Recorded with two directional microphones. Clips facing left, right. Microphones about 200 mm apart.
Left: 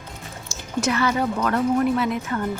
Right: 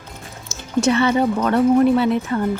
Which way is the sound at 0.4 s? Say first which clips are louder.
Right 6 dB; 25° right (ahead or behind).